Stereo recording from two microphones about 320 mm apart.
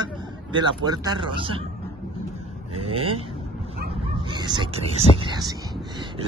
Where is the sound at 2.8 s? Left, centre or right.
Right.